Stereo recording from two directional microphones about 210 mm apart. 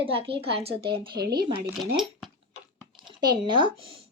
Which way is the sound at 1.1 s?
50° right (ahead or behind).